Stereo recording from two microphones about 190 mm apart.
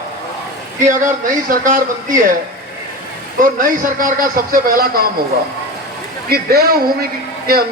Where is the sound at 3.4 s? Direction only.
45° right (ahead or behind).